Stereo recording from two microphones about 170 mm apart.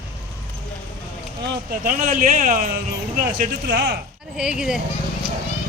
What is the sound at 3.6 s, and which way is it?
Speech, 75° right (ahead or behind).